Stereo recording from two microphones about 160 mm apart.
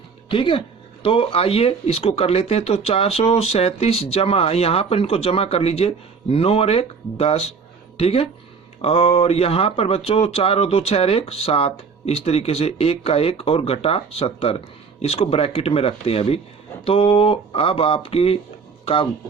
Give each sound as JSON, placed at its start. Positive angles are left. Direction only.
{"t": 0.3, "sound": "speech", "side_deg": 30}